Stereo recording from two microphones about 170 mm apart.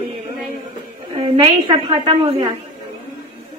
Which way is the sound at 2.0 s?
30° right (ahead or behind).